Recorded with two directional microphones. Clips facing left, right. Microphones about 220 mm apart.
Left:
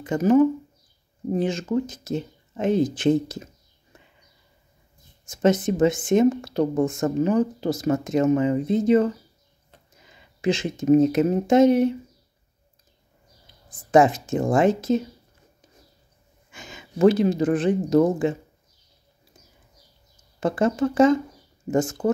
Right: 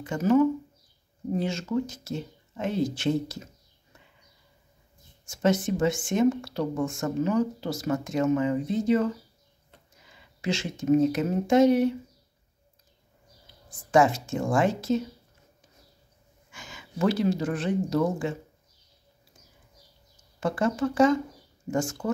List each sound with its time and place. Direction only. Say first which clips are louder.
0.0 s speech: left 4 dB; 20° left (ahead or behind)
5.2 s speech: left 4 dB; 20° left (ahead or behind)
10.0 s a sound: left 7 dB; 20° left (ahead or behind)
11.0 s speech: left 5 dB; 20° left (ahead or behind)
13.7 s speech: left 4 dB; 20° left (ahead or behind)
16.5 s a sound: left 6 dB; 20° left (ahead or behind)
17.6 s speech: left 7 dB; 20° left (ahead or behind)
20.3 s speech: left 4 dB; 20° left (ahead or behind)